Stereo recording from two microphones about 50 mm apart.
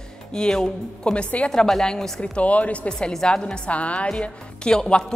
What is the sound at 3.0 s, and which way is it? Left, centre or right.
Speech, centre.